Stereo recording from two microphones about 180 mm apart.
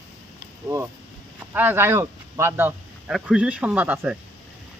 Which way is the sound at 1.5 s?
10° right (ahead or behind).